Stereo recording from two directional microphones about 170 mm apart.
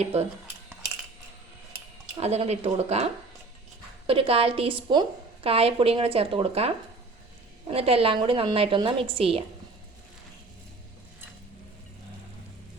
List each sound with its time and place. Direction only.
0.0 s a woman's voice: 40° right (ahead or behind)
2.1 s a woman's voice: 35° right (ahead or behind)